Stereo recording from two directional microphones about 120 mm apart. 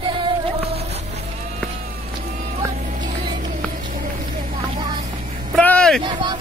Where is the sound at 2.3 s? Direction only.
70° right (ahead or behind).